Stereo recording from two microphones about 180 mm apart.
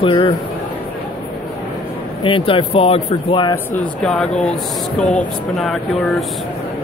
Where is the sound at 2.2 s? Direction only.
30° left (ahead or behind).